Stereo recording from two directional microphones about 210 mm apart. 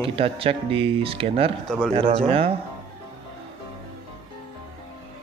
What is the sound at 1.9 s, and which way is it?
Speech, 30° right (ahead or behind).